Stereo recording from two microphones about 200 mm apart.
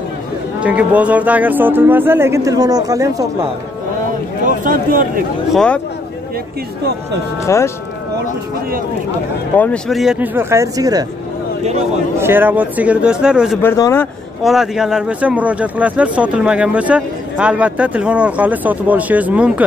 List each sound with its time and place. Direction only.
0.6 s speech: 5° right (ahead or behind)
4.5 s speech: 45° right (ahead or behind)
5.5 s speech: 5° left (ahead or behind)
7.4 s speech: 15° left (ahead or behind)
9.6 s speech: 5° left (ahead or behind); by 11.1 s 15° right (ahead or behind)
12.2 s speech: 10° right (ahead or behind)
13.6 s speech: 15° left (ahead or behind)
14.4 s speech: centre (ahead or behind)